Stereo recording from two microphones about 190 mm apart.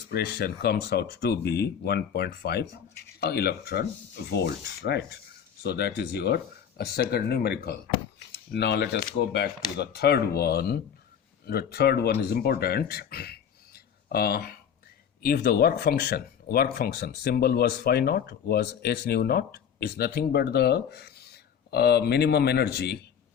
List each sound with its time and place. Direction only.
0.1 s speech: 55° left (ahead or behind)